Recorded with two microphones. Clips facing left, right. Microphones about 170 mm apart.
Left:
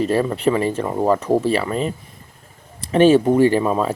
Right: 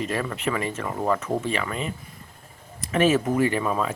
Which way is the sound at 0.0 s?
30° left (ahead or behind).